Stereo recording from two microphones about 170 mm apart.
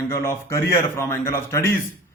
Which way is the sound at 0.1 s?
15° left (ahead or behind).